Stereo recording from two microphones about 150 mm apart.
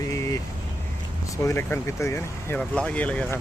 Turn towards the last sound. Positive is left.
turn(degrees=10)  # may be behind; listen again after turning